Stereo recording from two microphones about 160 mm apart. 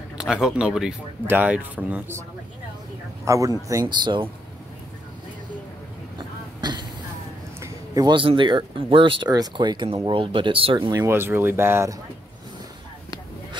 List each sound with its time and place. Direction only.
0.2 s speech: 5° right (ahead or behind)
3.3 s speech: 20° right (ahead or behind)
6.6 s throat clearing: 25° right (ahead or behind)
7.6 s speech: 25° right (ahead or behind)